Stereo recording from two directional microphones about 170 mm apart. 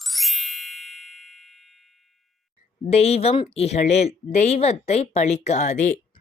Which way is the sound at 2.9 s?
35° left (ahead or behind).